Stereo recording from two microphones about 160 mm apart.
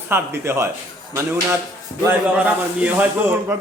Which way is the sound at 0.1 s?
15° right (ahead or behind).